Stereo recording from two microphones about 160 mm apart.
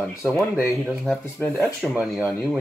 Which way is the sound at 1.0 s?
Centre (ahead or behind).